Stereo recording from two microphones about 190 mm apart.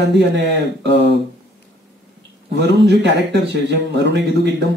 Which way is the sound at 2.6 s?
65° right (ahead or behind).